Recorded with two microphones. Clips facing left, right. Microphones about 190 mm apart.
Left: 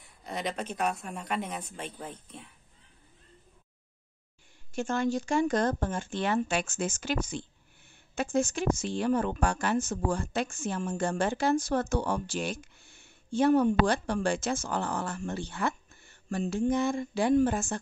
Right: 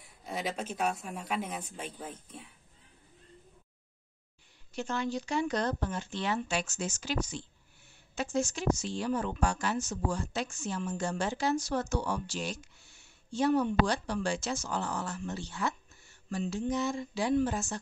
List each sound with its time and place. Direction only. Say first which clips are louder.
0.2 s a woman's voice: left 1 dB; 5° right (ahead or behind)
4.7 s speech: left 5 dB; 50° left (ahead or behind)